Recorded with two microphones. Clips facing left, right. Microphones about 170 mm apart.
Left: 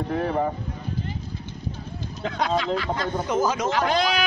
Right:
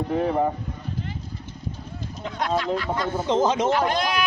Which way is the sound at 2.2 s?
90° left.